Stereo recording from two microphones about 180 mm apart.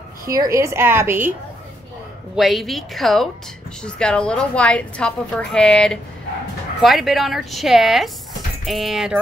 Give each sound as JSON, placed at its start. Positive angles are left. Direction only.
{"t": 0.3, "sound": "a woman's voice", "side_deg": -20}
{"t": 2.3, "sound": "a woman's voice", "side_deg": 0}